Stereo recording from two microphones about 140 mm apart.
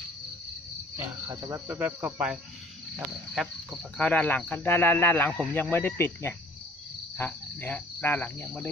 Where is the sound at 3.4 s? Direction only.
5° left (ahead or behind).